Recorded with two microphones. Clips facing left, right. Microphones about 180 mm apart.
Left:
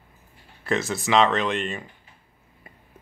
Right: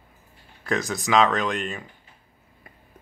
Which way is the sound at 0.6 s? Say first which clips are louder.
Left 1 dB; centre (ahead or behind).